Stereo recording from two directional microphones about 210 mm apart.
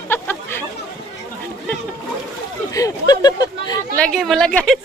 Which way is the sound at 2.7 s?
15° left (ahead or behind).